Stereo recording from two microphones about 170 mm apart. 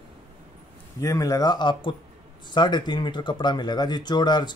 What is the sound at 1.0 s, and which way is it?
Speech, 20° left (ahead or behind).